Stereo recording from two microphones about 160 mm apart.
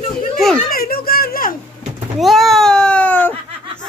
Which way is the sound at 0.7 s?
70° left (ahead or behind).